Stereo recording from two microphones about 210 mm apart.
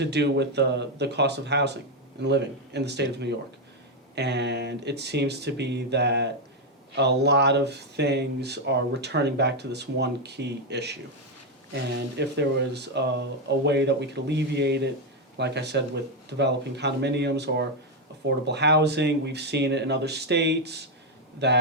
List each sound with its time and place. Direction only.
0.0 s speech: 55° right (ahead or behind)